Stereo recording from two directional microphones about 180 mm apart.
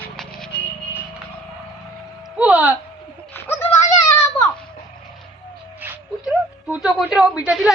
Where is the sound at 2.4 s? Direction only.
5° right (ahead or behind).